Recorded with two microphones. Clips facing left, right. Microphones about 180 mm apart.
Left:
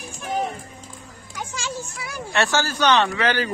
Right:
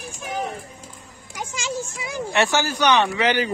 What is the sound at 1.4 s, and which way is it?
Speech, 15° right (ahead or behind).